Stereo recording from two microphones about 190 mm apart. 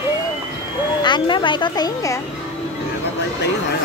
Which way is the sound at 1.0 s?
25° left (ahead or behind).